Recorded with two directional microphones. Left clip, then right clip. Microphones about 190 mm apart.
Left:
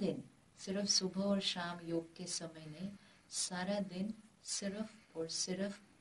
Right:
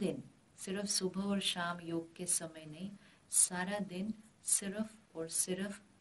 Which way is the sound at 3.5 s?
20° right (ahead or behind).